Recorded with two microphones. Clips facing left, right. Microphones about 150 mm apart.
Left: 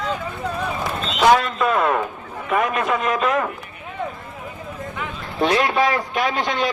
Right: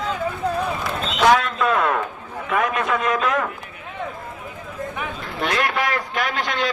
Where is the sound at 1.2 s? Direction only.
5° left (ahead or behind).